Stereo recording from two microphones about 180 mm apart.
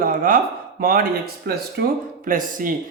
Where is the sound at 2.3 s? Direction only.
50° right (ahead or behind).